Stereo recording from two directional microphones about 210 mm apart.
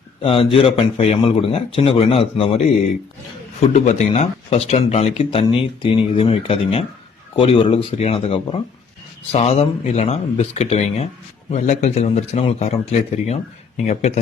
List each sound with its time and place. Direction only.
0.2 s speech: 25° left (ahead or behind)
3.6 s a man's voice: 35° left (ahead or behind)